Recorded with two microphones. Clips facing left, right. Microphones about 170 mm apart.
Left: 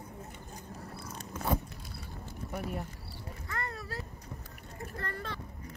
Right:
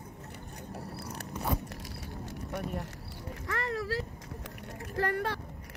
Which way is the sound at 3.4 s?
90° right.